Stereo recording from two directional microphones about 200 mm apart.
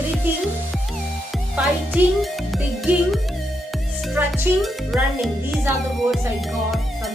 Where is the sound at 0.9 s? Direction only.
Centre (ahead or behind).